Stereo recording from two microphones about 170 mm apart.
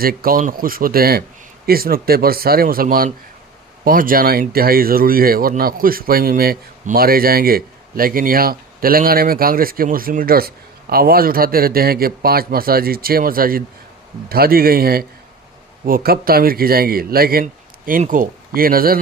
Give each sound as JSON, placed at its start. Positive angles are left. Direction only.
{"t": 0.0, "sound": "speech", "side_deg": -60}